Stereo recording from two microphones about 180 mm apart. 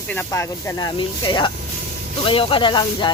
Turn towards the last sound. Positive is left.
turn(degrees=25)  # may be behind; listen again after turning